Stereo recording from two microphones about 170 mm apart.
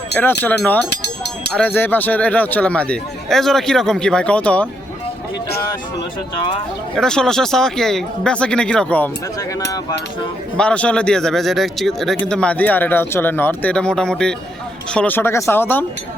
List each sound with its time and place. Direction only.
0.1 s speech: 10° left (ahead or behind)
6.9 s speech: 5° left (ahead or behind)
9.4 s speech: 20° left (ahead or behind)
10.6 s speech: 5° left (ahead or behind)